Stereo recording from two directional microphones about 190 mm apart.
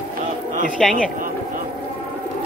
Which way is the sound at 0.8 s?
Centre (ahead or behind).